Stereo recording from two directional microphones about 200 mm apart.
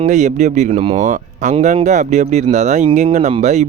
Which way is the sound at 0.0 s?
35° right (ahead or behind).